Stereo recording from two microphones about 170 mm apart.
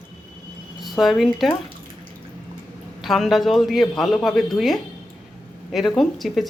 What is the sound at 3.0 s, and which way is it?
A woman's voice, centre (ahead or behind).